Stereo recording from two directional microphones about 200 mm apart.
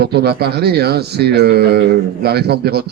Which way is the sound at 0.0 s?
55° right (ahead or behind).